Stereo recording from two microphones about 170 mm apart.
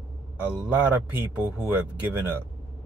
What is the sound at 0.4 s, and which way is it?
A man's voice, 10° right (ahead or behind).